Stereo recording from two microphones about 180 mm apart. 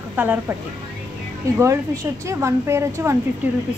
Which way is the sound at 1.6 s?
15° right (ahead or behind).